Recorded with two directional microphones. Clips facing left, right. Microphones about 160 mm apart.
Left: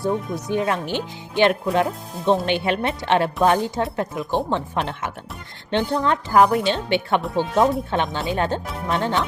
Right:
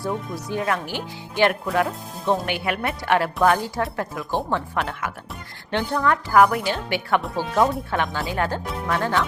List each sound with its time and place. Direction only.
0.0 s speech: 20° left (ahead or behind)